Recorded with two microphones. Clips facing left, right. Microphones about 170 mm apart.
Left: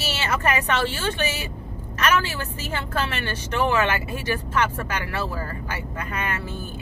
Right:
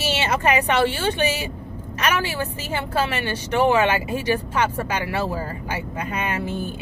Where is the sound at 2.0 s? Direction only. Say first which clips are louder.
Even; 15° right (ahead or behind).